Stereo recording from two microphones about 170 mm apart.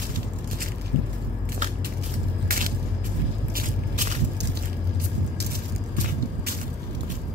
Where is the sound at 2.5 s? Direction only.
60° right (ahead or behind).